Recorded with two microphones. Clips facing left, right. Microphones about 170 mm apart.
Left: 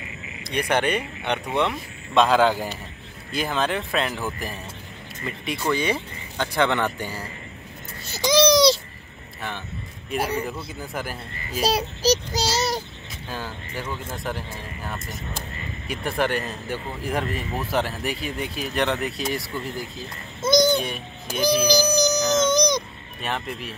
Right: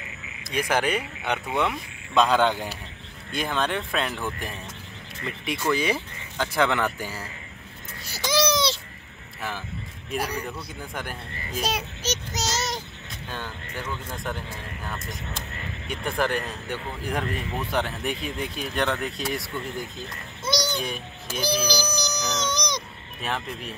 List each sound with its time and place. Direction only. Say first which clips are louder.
0.4 s speech: left 2 dB; 5° right (ahead or behind)
8.0 s baby cry: left 5 dB; 20° left (ahead or behind)
10.1 s speech: left 4 dB; centre (ahead or behind)
11.6 s child singing: left 9 dB; 35° left (ahead or behind)
13.3 s speech: left 3 dB; 5° left (ahead or behind)
15.9 s speech: left 2 dB; 5° left (ahead or behind)
20.4 s a child's voice: left 8 dB; 50° left (ahead or behind)
23.2 s speech: left 1 dB; centre (ahead or behind)